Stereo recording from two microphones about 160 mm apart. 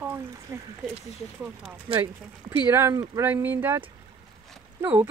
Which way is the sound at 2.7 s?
15° right (ahead or behind).